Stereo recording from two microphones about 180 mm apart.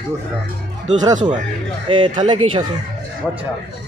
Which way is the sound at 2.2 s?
25° right (ahead or behind).